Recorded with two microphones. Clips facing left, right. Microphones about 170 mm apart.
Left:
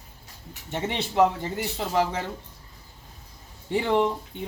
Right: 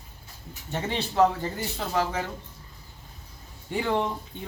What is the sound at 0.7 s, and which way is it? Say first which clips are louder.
Speech: left 1 dB; 20° left (ahead or behind).